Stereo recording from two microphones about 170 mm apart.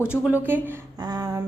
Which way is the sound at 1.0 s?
20° right (ahead or behind).